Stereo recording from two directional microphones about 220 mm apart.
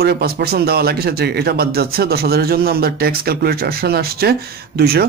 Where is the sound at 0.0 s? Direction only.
45° right (ahead or behind).